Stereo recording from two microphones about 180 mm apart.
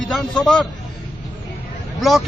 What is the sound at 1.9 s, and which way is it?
Speech, centre (ahead or behind).